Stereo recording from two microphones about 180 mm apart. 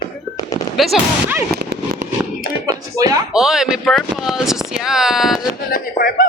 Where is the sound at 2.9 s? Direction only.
20° right (ahead or behind).